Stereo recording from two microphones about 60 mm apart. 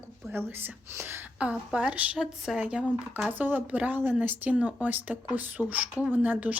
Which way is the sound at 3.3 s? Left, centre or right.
Right.